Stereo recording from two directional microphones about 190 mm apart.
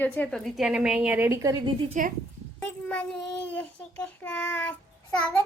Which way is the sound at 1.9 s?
45° right (ahead or behind).